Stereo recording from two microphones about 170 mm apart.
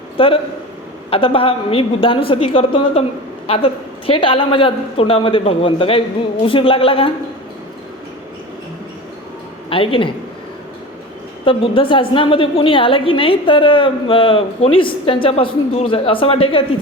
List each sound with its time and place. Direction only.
0.2 s a woman's voice: 30° left (ahead or behind)
9.6 s a man's voice: 30° left (ahead or behind)
11.4 s a woman's voice: 30° left (ahead or behind)